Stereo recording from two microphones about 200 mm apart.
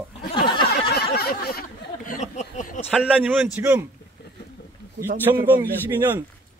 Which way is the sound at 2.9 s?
5° right (ahead or behind).